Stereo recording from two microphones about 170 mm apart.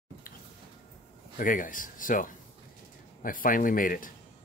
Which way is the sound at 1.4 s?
50° left (ahead or behind).